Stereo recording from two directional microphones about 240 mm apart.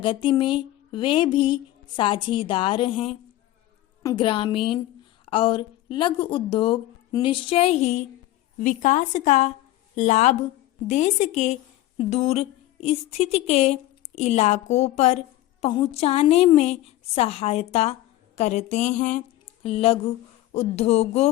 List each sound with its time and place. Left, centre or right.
0.0 s speech: left